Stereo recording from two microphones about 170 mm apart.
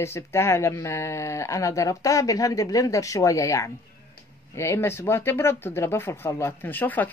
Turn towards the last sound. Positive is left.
turn(degrees=10)  # may be behind; listen again after turning